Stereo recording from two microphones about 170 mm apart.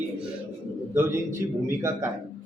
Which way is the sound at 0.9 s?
15° right (ahead or behind).